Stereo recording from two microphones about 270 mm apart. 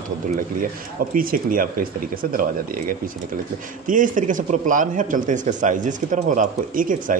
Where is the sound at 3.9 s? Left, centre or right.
Right.